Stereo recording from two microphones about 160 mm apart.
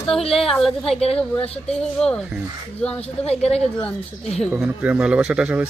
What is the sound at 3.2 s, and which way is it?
Speech, 40° left (ahead or behind).